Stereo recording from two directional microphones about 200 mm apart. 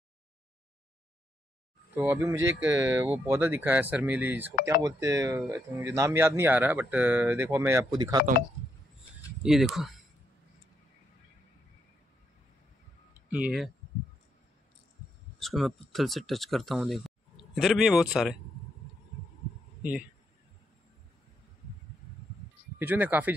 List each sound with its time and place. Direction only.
2.0 s speech: 15° right (ahead or behind)
9.4 s speech: centre (ahead or behind)
13.3 s speech: 5° right (ahead or behind)
15.3 s speech: centre (ahead or behind)
19.8 s a man's voice: 5° right (ahead or behind)
22.8 s speech: 10° right (ahead or behind)